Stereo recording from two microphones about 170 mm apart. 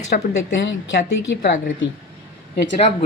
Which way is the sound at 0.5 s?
90° left.